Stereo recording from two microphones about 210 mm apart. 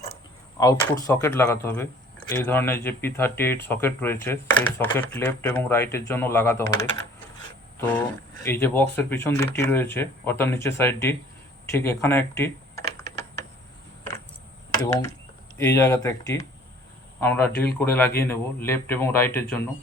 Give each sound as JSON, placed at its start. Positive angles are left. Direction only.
{"t": 0.6, "sound": "speech", "side_deg": 15}
{"t": 8.4, "sound": "speech", "side_deg": 10}
{"t": 14.7, "sound": "speech", "side_deg": 20}